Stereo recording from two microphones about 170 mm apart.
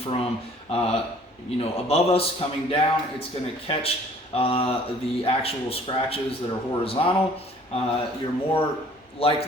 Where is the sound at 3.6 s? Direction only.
35° left (ahead or behind).